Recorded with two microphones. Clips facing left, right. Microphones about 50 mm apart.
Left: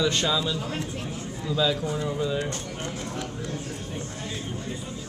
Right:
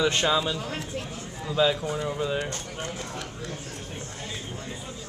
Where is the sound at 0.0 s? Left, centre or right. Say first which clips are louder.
Right 1 dB; right.